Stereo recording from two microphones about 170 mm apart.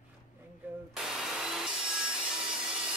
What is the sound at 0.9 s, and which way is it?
Wood, centre (ahead or behind).